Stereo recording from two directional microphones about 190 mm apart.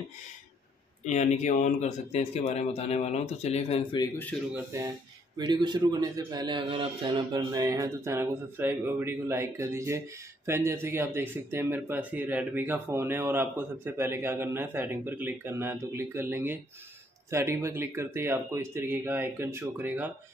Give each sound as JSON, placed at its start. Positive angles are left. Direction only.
{"t": 1.0, "sound": "speech", "side_deg": 35}
{"t": 4.3, "sound": "speech", "side_deg": 5}
{"t": 4.7, "sound": "a man's voice", "side_deg": -15}